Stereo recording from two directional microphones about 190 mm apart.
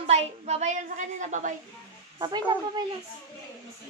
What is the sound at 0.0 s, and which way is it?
A woman's voice, 35° right (ahead or behind).